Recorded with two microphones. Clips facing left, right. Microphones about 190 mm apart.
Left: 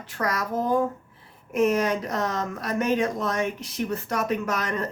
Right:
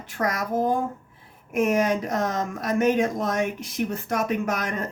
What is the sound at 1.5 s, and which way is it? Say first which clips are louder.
Speech: even; 50° right (ahead or behind).